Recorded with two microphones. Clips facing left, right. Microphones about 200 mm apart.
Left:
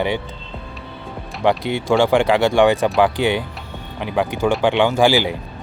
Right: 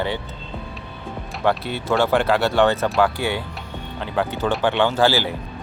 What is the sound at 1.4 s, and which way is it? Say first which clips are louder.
Speech: left 4 dB; 15° left (ahead or behind).